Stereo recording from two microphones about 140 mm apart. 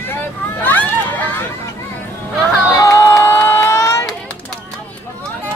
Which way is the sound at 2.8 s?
20° left (ahead or behind).